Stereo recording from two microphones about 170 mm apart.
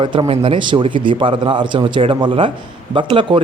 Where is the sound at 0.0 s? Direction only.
30° right (ahead or behind).